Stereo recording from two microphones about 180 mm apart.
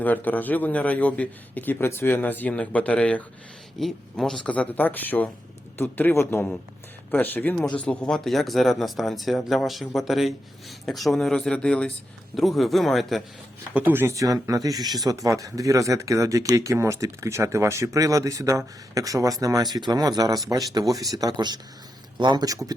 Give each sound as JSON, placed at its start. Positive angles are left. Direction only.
{"t": 0.0, "sound": "a man's voice", "side_deg": 10}
{"t": 13.7, "sound": "speech", "side_deg": -10}